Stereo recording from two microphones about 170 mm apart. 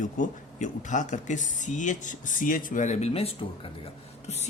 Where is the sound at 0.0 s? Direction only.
50° left (ahead or behind).